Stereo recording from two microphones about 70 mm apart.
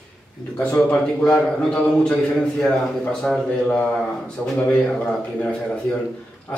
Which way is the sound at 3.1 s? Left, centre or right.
Centre.